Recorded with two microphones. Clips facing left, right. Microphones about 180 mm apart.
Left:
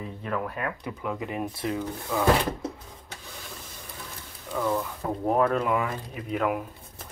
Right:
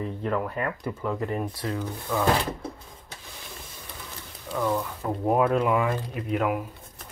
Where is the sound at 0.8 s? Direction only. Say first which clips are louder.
Right 3 dB; 10° left (ahead or behind).